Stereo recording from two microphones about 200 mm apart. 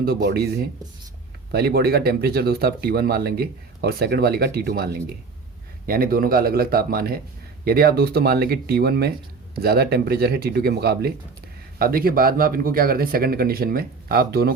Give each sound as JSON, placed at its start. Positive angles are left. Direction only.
{"t": 0.0, "sound": "speech", "side_deg": -50}
{"t": 1.5, "sound": "speech", "side_deg": -50}